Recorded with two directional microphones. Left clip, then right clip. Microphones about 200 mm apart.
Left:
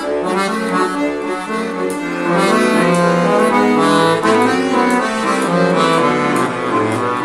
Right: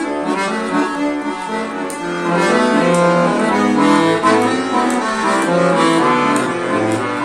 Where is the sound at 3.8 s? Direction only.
Centre (ahead or behind).